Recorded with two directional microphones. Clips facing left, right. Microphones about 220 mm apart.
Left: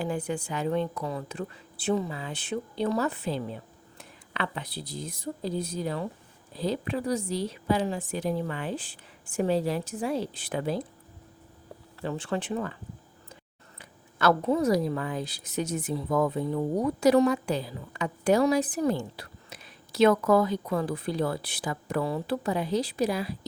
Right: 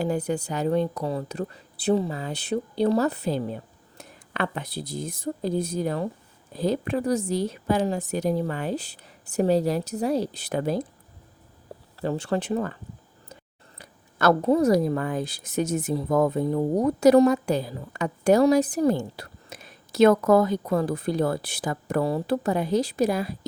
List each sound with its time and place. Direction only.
0.0 s a woman's voice: 40° right (ahead or behind)
11.9 s speech: 40° right (ahead or behind)
13.7 s a woman's voice: 40° right (ahead or behind)